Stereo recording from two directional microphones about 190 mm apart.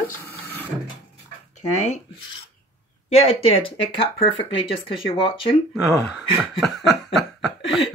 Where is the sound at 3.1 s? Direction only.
30° left (ahead or behind).